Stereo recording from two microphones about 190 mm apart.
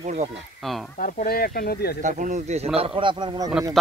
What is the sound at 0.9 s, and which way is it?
Speech, 50° left (ahead or behind).